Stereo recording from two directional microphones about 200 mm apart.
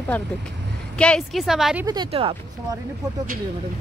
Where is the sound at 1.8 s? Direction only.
20° right (ahead or behind).